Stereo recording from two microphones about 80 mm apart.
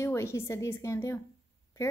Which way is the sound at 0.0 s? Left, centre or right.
Left.